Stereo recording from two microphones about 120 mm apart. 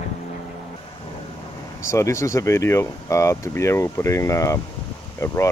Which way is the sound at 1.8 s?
25° left (ahead or behind).